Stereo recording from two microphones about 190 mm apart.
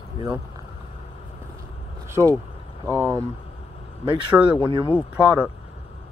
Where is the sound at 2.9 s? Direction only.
15° right (ahead or behind).